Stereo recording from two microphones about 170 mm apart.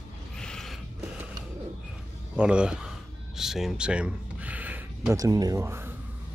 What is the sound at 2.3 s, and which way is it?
Speech, 5° right (ahead or behind).